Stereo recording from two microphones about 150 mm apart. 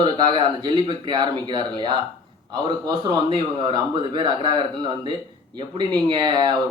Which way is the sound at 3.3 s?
30° right (ahead or behind).